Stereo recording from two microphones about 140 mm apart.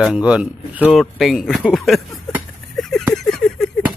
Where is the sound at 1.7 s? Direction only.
Centre (ahead or behind).